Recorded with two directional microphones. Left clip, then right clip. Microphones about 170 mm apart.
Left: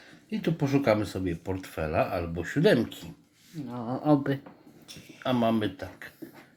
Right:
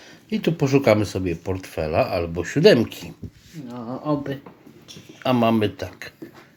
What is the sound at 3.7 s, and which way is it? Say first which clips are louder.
Speech: even; 35° left (ahead or behind).